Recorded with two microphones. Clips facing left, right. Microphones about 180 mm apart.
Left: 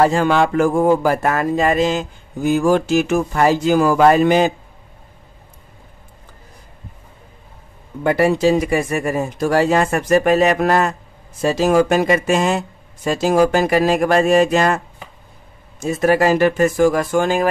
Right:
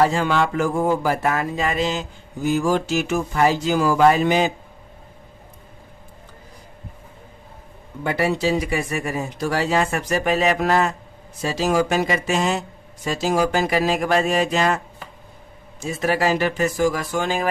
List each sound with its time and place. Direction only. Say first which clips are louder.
0.0 s speech: left 4 dB; 50° left (ahead or behind)
8.0 s speech: left 6 dB; 50° left (ahead or behind)
15.8 s speech: left 6 dB; 45° left (ahead or behind)